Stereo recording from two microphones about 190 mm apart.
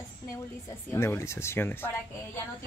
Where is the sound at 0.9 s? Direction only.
15° left (ahead or behind).